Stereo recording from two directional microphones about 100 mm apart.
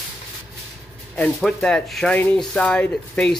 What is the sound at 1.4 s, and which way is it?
Speech, 5° left (ahead or behind).